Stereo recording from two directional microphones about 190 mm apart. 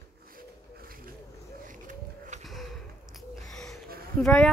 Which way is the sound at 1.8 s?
45° right (ahead or behind).